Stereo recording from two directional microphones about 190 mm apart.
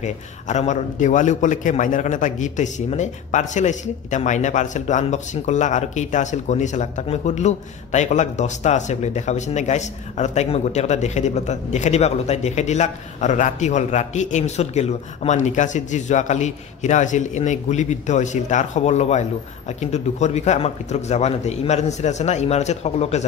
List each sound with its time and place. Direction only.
0.0 s a man's voice: 40° left (ahead or behind)